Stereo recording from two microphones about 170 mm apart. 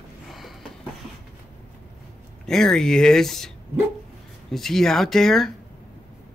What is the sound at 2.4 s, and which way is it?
Speech, 5° left (ahead or behind).